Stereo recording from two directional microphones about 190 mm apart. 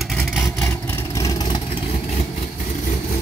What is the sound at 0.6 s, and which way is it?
Vehicle, 10° left (ahead or behind).